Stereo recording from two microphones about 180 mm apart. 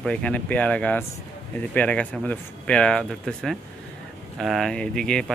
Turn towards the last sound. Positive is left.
turn(degrees=5)  # may be behind; listen again after turning